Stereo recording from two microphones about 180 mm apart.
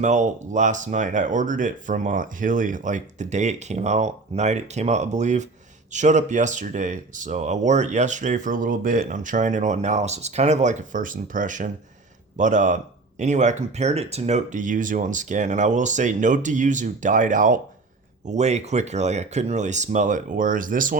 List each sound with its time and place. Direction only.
0.0 s speech: 40° right (ahead or behind)